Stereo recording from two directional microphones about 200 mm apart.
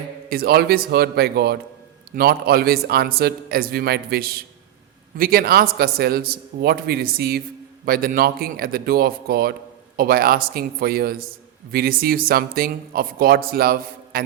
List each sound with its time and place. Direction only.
0.3 s speech: 50° right (ahead or behind)